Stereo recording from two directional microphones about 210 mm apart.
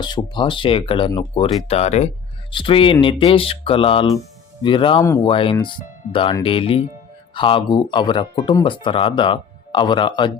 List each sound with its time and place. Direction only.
0.0 s speech: 20° left (ahead or behind)